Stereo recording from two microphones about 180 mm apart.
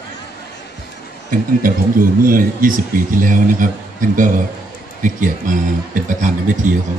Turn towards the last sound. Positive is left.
turn(degrees=-45)  # may be behind; listen again after turning